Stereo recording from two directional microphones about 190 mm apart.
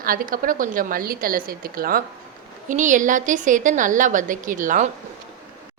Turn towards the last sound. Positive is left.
turn(degrees=-45)  # may be behind; listen again after turning